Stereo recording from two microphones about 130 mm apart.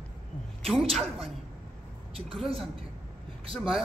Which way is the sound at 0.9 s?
Centre (ahead or behind).